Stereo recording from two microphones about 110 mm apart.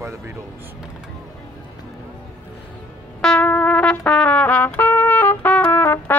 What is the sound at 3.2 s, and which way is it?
Music, 10° left (ahead or behind).